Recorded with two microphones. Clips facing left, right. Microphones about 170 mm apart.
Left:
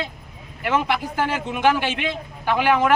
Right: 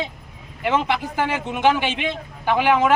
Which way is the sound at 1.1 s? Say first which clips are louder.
Even; 15° right (ahead or behind).